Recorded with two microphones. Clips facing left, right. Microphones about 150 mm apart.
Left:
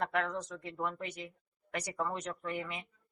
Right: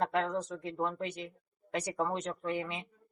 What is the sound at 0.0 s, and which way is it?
Speech, 25° right (ahead or behind).